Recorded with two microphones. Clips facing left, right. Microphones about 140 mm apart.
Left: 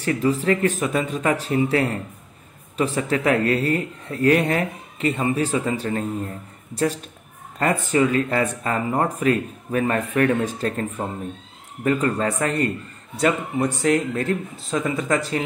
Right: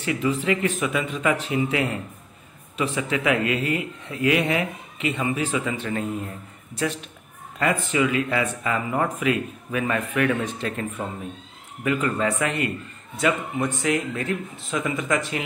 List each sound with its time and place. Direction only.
0.0 s speech: 40° left (ahead or behind)
7.5 s speech: 40° left (ahead or behind)